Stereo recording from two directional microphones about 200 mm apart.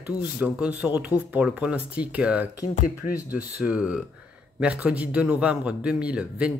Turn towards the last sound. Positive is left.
turn(degrees=-5)  # may be behind; listen again after turning